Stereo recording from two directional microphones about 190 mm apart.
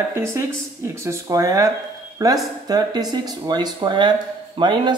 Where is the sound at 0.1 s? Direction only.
15° right (ahead or behind).